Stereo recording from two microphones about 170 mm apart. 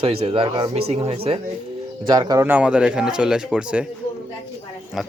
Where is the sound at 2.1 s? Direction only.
25° right (ahead or behind).